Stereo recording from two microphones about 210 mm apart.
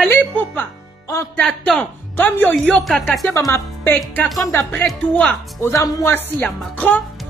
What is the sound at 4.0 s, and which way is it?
Speech, centre (ahead or behind).